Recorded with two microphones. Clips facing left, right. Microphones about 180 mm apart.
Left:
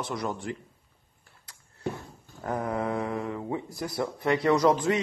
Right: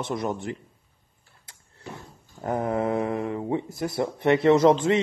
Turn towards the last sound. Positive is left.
turn(degrees=-25)  # may be behind; listen again after turning